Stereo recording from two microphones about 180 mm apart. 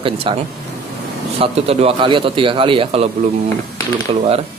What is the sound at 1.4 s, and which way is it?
Speech, 35° right (ahead or behind).